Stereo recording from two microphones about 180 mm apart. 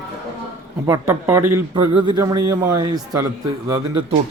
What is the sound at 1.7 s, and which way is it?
A man's voice, 25° right (ahead or behind).